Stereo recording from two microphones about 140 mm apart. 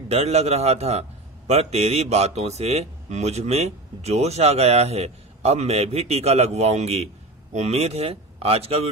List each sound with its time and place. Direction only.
0.1 s speech: 50° right (ahead or behind)